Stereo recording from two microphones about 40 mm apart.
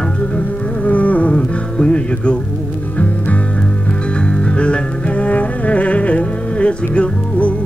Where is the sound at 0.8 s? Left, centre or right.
Left.